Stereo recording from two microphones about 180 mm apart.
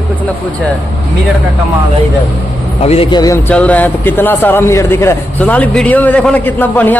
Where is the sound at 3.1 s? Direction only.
20° left (ahead or behind).